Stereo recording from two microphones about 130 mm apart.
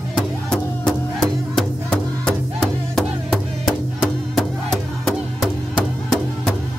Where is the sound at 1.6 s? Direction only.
5° left (ahead or behind).